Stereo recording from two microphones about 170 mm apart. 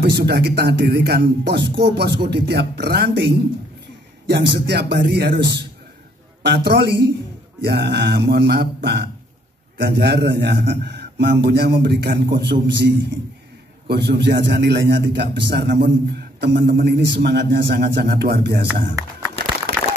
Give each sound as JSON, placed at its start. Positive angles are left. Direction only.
{"t": 0.1, "sound": "a man's voice", "side_deg": -75}
{"t": 12.8, "sound": "a man's voice", "side_deg": -90}
{"t": 13.8, "sound": "a man's voice", "side_deg": -75}
{"t": 19.7, "sound": "a sound", "side_deg": -75}